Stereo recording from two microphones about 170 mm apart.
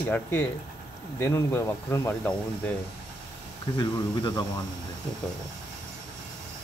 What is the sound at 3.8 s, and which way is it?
Speech, 25° left (ahead or behind).